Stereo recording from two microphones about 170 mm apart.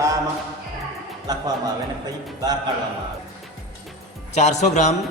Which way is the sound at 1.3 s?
25° right (ahead or behind).